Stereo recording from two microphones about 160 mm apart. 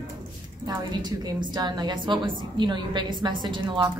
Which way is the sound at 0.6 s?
25° right (ahead or behind).